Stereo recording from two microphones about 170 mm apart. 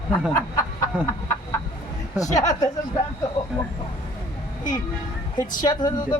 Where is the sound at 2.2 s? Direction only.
20° left (ahead or behind).